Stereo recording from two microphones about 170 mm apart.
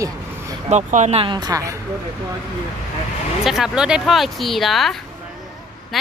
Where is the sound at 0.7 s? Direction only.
45° right (ahead or behind); by 1.8 s 20° right (ahead or behind).